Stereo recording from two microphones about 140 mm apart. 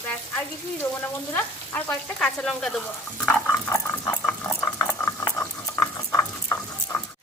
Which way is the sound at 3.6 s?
20° left (ahead or behind).